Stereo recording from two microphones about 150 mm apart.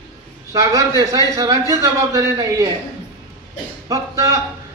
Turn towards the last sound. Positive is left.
turn(degrees=-20)  # may be behind; listen again after turning